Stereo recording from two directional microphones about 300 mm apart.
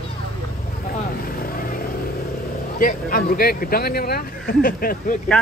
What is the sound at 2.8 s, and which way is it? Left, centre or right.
Speech, left.